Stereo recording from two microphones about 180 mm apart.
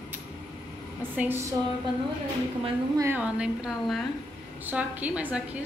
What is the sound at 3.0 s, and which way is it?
A woman's voice, 10° right (ahead or behind).